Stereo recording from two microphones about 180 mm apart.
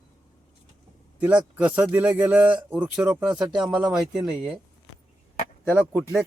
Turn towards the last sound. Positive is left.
turn(degrees=-5)  # may be behind; listen again after turning